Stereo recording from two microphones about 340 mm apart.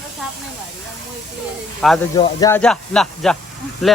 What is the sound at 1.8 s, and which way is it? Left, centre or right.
Speech, centre.